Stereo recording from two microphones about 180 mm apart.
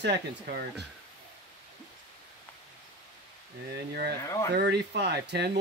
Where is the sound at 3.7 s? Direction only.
65° right (ahead or behind).